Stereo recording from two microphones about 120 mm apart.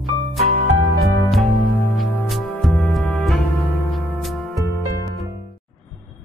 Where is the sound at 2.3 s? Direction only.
Centre (ahead or behind).